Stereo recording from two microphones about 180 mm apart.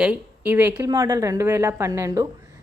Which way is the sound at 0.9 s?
20° right (ahead or behind).